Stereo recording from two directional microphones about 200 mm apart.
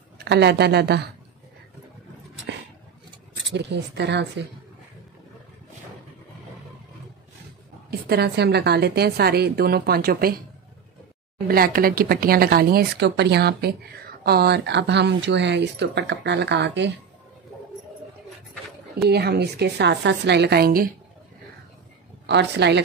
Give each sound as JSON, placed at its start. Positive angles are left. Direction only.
{"t": 0.2, "sound": "speech", "side_deg": -55}
{"t": 3.5, "sound": "speech", "side_deg": -60}
{"t": 8.1, "sound": "speech", "side_deg": -55}
{"t": 11.4, "sound": "speech", "side_deg": -50}
{"t": 19.0, "sound": "speech", "side_deg": -55}
{"t": 22.2, "sound": "a woman's voice", "side_deg": -60}